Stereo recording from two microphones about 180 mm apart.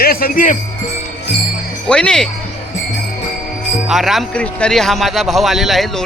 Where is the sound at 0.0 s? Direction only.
55° left (ahead or behind).